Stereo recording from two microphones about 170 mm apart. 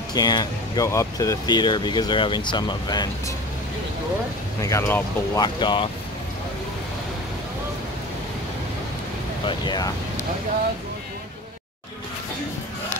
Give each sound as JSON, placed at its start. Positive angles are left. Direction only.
{"t": 0.1, "sound": "speech", "side_deg": 25}
{"t": 4.6, "sound": "speech", "side_deg": 15}
{"t": 5.4, "sound": "speech", "side_deg": 25}
{"t": 9.5, "sound": "speech", "side_deg": 25}